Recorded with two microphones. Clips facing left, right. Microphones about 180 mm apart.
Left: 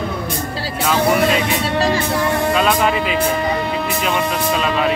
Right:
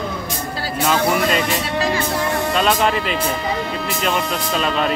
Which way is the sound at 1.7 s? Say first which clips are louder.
Left 3 dB; 35° left (ahead or behind).